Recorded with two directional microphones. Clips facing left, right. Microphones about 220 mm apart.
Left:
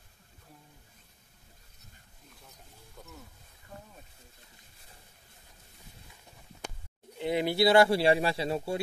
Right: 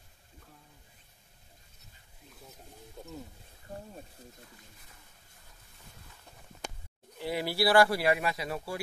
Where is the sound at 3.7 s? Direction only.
35° right (ahead or behind).